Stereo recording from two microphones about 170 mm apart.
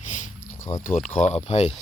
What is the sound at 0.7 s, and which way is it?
Speech, 45° left (ahead or behind).